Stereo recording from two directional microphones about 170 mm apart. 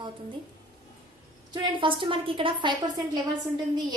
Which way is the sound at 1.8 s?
30° right (ahead or behind).